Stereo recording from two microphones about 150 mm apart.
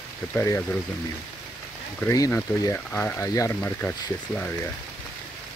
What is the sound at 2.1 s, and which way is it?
Speech, 20° left (ahead or behind).